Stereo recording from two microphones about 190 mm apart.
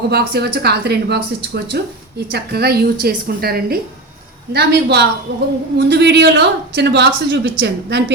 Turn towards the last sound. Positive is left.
turn(degrees=-65)  # may be behind; listen again after turning